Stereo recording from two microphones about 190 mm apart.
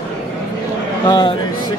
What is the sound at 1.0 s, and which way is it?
Speech, 20° left (ahead or behind).